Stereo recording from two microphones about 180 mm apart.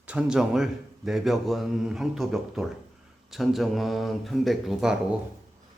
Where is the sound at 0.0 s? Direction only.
5° right (ahead or behind).